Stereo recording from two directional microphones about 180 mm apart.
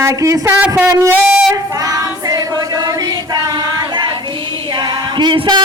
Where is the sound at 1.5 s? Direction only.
20° right (ahead or behind).